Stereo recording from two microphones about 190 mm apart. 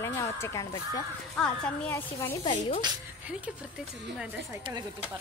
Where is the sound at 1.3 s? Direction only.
5° left (ahead or behind).